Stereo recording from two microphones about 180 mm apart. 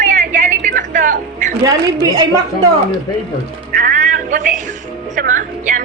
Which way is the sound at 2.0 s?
20° right (ahead or behind).